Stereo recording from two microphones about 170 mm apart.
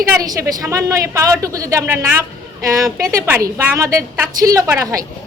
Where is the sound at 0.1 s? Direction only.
20° right (ahead or behind).